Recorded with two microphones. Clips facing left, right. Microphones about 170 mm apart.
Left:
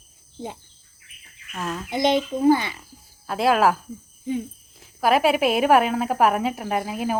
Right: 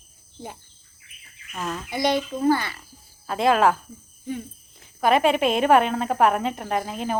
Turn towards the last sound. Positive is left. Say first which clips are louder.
# left 1 dB
turn(degrees=5)  # may be behind; listen again after turning